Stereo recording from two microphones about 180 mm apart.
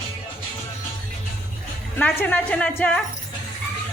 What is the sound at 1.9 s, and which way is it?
A woman's voice, 10° left (ahead or behind).